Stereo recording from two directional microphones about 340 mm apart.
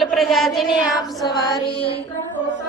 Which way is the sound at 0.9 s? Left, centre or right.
Centre.